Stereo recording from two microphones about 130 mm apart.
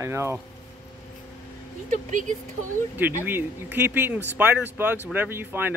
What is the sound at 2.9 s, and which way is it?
Speech, 15° right (ahead or behind).